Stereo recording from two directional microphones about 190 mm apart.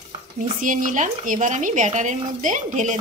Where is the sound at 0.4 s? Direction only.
45° right (ahead or behind).